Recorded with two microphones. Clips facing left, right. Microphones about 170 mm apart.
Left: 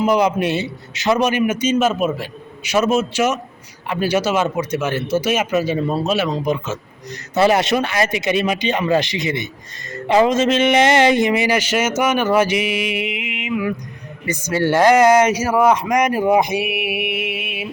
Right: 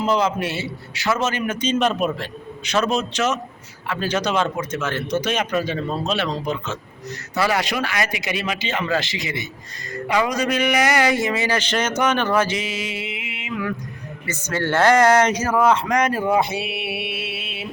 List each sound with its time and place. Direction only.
0.0 s a man's voice: 15° left (ahead or behind)
7.3 s a man's voice: 25° left (ahead or behind)